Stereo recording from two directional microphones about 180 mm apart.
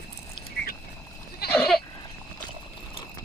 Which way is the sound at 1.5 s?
5° left (ahead or behind).